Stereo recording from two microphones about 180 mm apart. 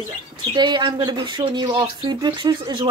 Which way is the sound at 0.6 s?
25° right (ahead or behind).